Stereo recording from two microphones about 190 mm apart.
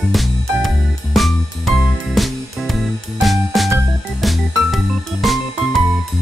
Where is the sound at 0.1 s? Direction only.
Centre (ahead or behind).